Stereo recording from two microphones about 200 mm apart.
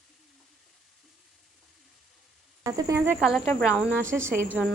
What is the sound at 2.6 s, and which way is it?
Speech, 15° right (ahead or behind).